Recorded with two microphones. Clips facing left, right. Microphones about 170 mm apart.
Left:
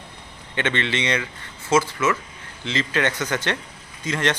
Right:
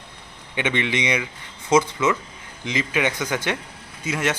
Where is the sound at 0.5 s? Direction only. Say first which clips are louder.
Right 1 dB; 10° right (ahead or behind).